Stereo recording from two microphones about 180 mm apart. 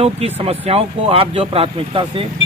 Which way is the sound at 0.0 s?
35° right (ahead or behind).